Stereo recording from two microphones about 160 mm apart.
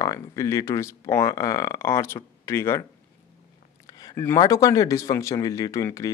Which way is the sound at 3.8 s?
20° left (ahead or behind).